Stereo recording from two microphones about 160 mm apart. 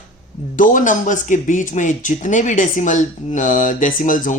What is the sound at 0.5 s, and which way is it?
Speech, 55° left (ahead or behind).